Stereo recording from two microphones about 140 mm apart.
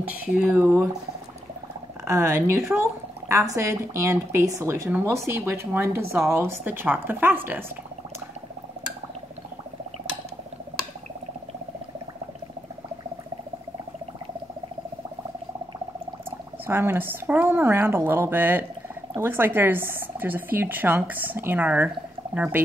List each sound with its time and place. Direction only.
0.0 s speech: 10° right (ahead or behind)
2.0 s speech: 20° right (ahead or behind)
16.3 s speech: 15° right (ahead or behind)